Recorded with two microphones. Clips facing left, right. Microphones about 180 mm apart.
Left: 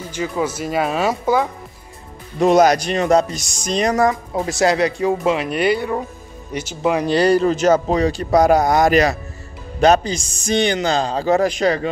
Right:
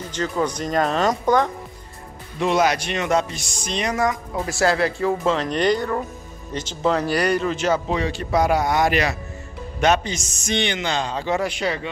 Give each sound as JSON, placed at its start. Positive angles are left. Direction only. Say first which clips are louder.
{"t": 0.1, "sound": "speech", "louder": "left 1 dB", "side_deg": 10}
{"t": 2.3, "sound": "a man's voice", "louder": "left 7 dB", "side_deg": 40}
{"t": 4.4, "sound": "speech", "louder": "left 3 dB", "side_deg": 20}
{"t": 7.1, "sound": "a man's voice", "louder": "left 6 dB", "side_deg": 30}